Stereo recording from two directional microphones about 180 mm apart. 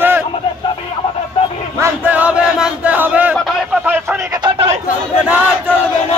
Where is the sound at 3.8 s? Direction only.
10° right (ahead or behind).